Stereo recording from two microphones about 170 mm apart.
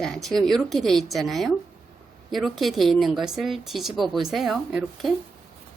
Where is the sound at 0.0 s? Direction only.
Centre (ahead or behind).